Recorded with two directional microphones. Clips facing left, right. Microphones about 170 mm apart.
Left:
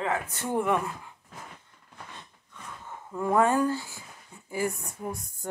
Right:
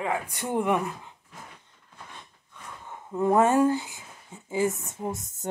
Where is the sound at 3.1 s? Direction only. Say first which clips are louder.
Right 3 dB; 20° right (ahead or behind).